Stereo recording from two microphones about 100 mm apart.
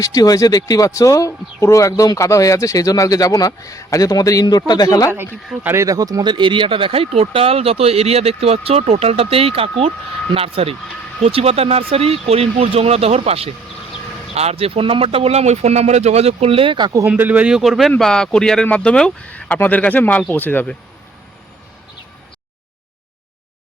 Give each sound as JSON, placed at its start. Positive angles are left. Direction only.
{"t": 0.0, "sound": "speech", "side_deg": 35}
{"t": 5.6, "sound": "speech", "side_deg": -30}
{"t": 17.1, "sound": "a man's voice", "side_deg": -15}